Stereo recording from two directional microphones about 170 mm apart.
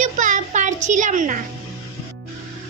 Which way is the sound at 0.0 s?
50° right (ahead or behind).